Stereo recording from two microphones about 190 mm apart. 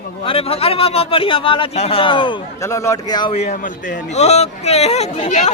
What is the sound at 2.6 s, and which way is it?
Speech, 15° left (ahead or behind).